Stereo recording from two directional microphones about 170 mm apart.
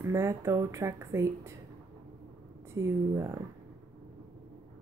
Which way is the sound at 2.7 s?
15° right (ahead or behind).